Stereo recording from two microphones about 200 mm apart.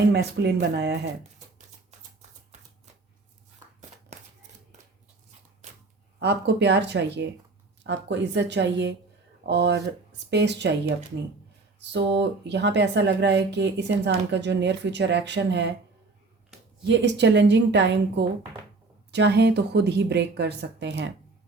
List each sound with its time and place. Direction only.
0.0 s speech: 55° right (ahead or behind)
5.6 s a sound: 35° right (ahead or behind)
6.1 s speech: 60° right (ahead or behind)
16.8 s speech: 60° right (ahead or behind)